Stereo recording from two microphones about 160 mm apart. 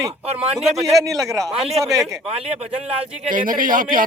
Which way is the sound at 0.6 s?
Centre (ahead or behind).